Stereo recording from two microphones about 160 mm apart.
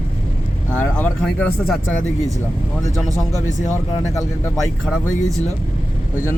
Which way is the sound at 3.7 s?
15° left (ahead or behind).